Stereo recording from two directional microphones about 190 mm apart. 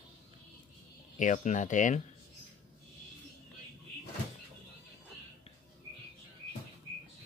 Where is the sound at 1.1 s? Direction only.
40° left (ahead or behind).